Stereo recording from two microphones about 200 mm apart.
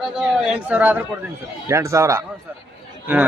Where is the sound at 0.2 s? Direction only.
5° right (ahead or behind).